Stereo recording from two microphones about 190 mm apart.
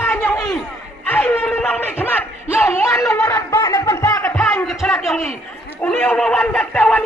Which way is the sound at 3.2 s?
15° left (ahead or behind).